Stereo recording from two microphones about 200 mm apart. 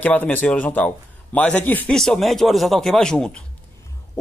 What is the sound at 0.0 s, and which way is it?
Speech, 10° left (ahead or behind).